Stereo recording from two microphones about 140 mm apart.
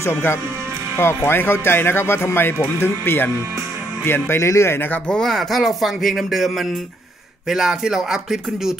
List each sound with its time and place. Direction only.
0.0 s speech: 15° left (ahead or behind); by 8.7 s 5° right (ahead or behind)